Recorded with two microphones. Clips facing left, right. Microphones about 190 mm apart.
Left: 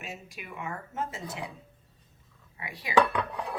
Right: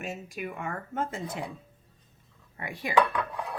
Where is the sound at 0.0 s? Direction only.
50° right (ahead or behind).